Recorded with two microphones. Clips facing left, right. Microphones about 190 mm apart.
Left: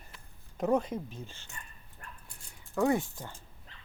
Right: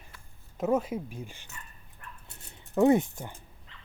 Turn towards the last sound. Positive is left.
turn(degrees=-20)  # may be behind; listen again after turning